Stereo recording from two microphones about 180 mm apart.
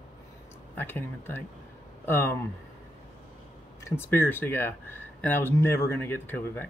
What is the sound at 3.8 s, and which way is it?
Speech, 10° left (ahead or behind).